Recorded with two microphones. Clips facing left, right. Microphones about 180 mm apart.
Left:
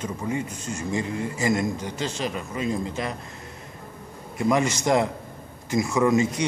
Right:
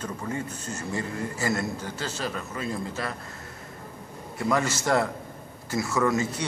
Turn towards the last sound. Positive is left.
turn(degrees=15)  # may be behind; listen again after turning